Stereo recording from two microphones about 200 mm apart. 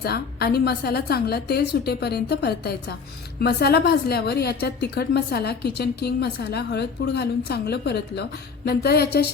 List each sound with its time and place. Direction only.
0.0 s a woman's voice: 50° left (ahead or behind)